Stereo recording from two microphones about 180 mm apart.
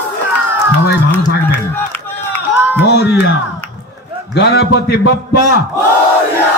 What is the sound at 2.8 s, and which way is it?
Speech, 65° left (ahead or behind).